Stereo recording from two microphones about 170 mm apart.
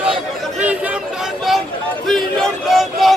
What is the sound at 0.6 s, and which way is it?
Chatter, 10° right (ahead or behind).